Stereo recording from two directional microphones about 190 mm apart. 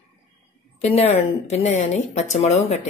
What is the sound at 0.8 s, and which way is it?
Speech, 35° left (ahead or behind).